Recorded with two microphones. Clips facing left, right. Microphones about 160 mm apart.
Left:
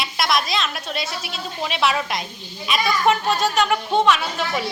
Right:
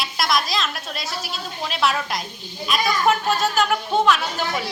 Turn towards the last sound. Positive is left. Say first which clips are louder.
# left 1 dB
turn(degrees=0)  # may be behind; listen again after turning